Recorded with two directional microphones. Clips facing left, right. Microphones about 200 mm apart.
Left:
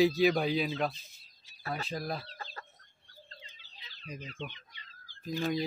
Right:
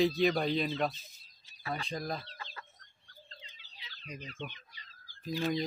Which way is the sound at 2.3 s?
40° left (ahead or behind).